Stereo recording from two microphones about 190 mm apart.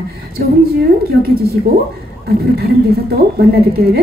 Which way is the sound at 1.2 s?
55° right (ahead or behind).